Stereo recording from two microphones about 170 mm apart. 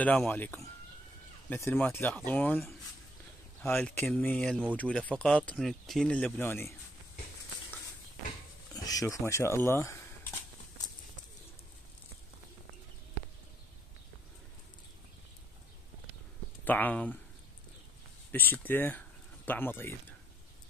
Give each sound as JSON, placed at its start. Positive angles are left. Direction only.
{"t": 0.0, "sound": "speech", "side_deg": 5}
{"t": 3.6, "sound": "speech", "side_deg": 5}
{"t": 8.7, "sound": "speech", "side_deg": 20}
{"t": 16.6, "sound": "speech", "side_deg": 10}
{"t": 18.3, "sound": "speech", "side_deg": 10}